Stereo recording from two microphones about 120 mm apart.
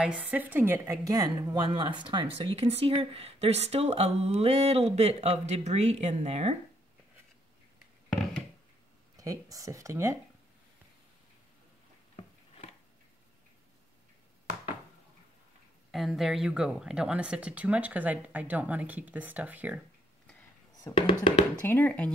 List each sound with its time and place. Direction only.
0.0 s speech: 10° right (ahead or behind); by 6.5 s 65° right (ahead or behind)
9.1 s speech: 30° right (ahead or behind)
12.2 s a sound: 60° left (ahead or behind)
15.9 s speech: centre (ahead or behind)
20.8 s speech: 45° left (ahead or behind)
21.6 s speech: 15° left (ahead or behind)